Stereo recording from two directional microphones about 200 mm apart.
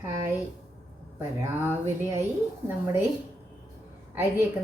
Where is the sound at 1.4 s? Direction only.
10° right (ahead or behind).